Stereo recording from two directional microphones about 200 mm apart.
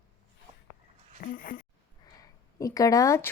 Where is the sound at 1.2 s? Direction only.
45° left (ahead or behind).